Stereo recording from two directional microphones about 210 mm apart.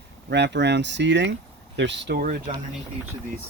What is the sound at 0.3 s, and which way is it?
Speech, 55° right (ahead or behind).